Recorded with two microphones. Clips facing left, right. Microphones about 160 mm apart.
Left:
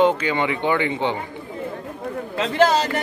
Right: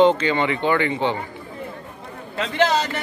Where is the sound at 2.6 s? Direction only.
40° left (ahead or behind).